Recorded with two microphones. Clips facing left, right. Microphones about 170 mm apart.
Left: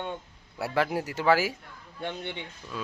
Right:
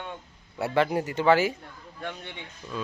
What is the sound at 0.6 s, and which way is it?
Speech, centre (ahead or behind).